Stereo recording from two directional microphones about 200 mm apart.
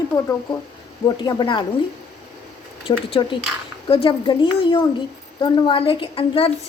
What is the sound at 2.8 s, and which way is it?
A woman's voice, 25° left (ahead or behind).